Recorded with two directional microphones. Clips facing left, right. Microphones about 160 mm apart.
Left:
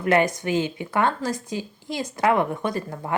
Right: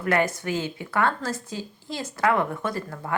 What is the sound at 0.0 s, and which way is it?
A woman's voice, 20° left (ahead or behind).